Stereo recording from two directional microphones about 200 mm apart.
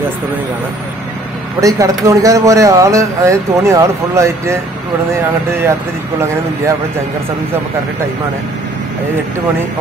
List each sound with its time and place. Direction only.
1.6 s speech: 15° right (ahead or behind)